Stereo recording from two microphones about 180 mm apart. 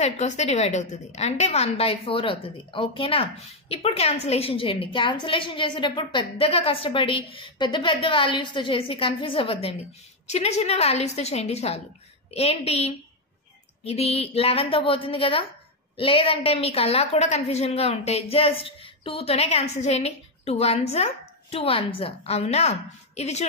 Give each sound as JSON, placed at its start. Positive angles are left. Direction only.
{"t": 0.0, "sound": "a woman's voice", "side_deg": 40}